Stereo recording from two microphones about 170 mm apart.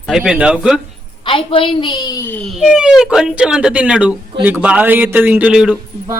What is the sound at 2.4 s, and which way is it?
Speech, centre (ahead or behind).